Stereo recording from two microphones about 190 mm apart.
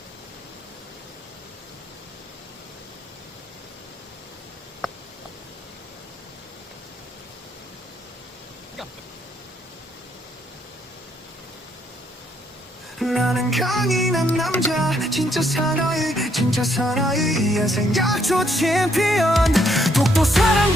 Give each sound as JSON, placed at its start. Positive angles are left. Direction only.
{"t": 13.0, "sound": "music", "side_deg": 0}